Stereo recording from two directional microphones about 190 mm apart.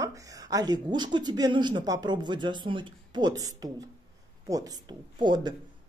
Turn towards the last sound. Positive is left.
turn(degrees=-25)  # may be behind; listen again after turning